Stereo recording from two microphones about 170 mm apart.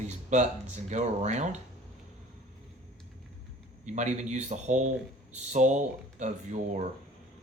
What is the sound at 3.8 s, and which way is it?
Speech, 45° right (ahead or behind).